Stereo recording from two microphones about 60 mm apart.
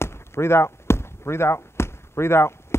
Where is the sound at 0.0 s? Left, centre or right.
Left.